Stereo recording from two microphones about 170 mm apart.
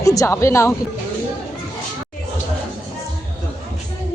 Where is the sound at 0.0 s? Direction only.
20° left (ahead or behind).